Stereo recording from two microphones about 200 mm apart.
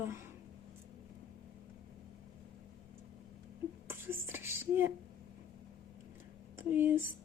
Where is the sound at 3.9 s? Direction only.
10° right (ahead or behind).